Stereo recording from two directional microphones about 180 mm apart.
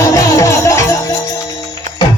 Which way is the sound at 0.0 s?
20° left (ahead or behind).